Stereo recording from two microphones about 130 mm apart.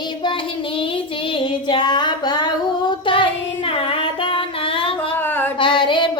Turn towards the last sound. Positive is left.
turn(degrees=40)  # may be behind; listen again after turning